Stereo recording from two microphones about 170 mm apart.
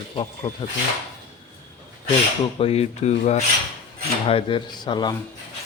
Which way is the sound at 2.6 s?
35° left (ahead or behind).